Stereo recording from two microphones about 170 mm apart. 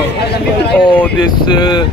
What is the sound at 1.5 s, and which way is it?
Speech, 30° left (ahead or behind).